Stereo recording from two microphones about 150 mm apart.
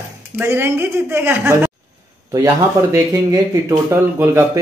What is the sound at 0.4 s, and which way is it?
Speech, 15° right (ahead or behind).